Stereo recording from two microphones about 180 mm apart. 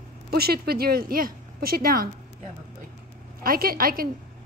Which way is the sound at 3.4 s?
55° right (ahead or behind).